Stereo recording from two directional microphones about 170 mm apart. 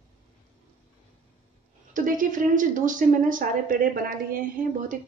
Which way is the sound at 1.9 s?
50° right (ahead or behind).